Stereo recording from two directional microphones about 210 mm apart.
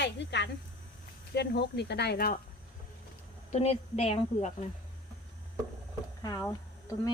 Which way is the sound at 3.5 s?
30° left (ahead or behind).